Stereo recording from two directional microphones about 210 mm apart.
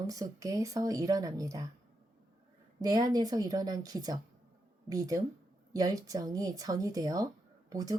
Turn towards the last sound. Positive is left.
turn(degrees=-15)  # may be behind; listen again after turning